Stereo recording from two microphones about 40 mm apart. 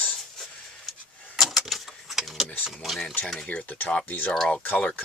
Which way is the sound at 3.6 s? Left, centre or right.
Left.